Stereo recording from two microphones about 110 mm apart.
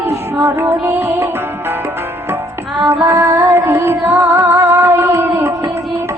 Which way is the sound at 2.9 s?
20° right (ahead or behind).